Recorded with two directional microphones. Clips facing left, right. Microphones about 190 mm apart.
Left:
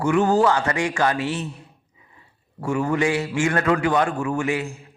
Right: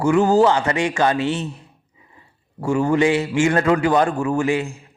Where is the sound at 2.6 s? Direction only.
30° right (ahead or behind).